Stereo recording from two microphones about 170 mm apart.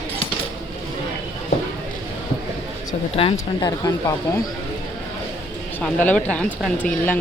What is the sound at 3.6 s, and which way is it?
Speech, 25° left (ahead or behind).